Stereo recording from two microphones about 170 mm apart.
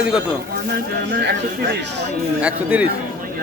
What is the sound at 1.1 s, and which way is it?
Speech, 70° right (ahead or behind).